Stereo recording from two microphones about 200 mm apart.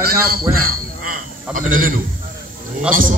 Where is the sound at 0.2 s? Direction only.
50° right (ahead or behind).